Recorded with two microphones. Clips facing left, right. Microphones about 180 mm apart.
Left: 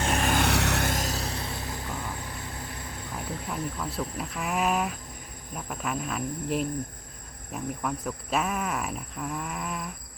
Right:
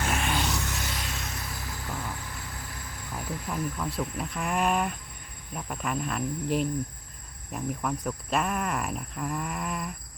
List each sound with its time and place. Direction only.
0.0 s vehicle: 35° left (ahead or behind)
0.4 s vehicle: 65° left (ahead or behind); by 2.6 s 25° left (ahead or behind)
3.5 s speech: centre (ahead or behind)